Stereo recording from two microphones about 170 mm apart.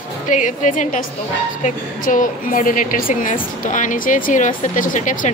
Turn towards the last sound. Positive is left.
turn(degrees=50)  # may be behind; listen again after turning